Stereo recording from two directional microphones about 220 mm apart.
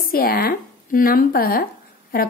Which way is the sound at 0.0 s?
40° left (ahead or behind).